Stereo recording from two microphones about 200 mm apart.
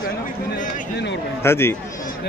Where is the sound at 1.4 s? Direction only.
10° left (ahead or behind).